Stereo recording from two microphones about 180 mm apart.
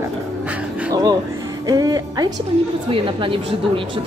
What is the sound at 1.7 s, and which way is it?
Speech, 20° right (ahead or behind).